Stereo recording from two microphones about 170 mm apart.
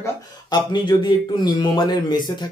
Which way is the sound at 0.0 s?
25° left (ahead or behind).